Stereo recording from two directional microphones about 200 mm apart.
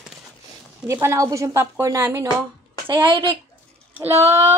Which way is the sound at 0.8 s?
15° right (ahead or behind).